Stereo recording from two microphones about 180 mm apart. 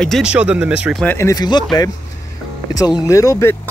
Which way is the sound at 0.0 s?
Centre (ahead or behind).